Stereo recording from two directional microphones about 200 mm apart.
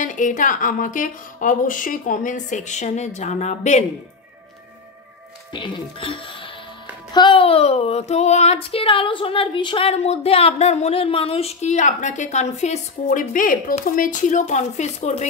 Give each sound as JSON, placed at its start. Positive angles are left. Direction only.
{"t": 0.0, "sound": "speech", "side_deg": 40}
{"t": 5.5, "sound": "speech", "side_deg": 25}